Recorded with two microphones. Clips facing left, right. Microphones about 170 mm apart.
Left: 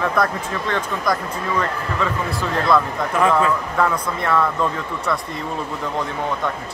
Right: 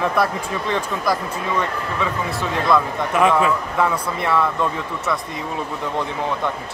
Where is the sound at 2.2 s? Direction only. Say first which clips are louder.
Even; centre (ahead or behind).